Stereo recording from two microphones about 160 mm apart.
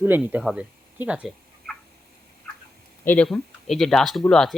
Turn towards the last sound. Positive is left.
turn(degrees=5)  # may be behind; listen again after turning